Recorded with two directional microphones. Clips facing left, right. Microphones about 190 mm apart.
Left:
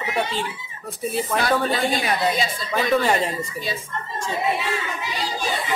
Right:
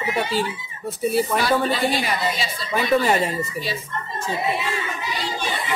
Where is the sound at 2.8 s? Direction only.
Centre (ahead or behind).